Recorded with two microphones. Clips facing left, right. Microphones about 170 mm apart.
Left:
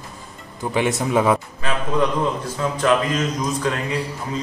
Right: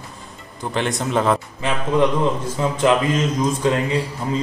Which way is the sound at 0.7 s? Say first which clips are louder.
Left 2 dB; 5° left (ahead or behind).